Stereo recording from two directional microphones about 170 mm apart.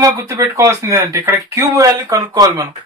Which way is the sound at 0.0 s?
20° right (ahead or behind).